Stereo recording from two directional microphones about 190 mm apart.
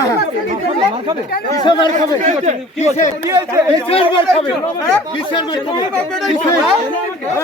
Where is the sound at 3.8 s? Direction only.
30° left (ahead or behind).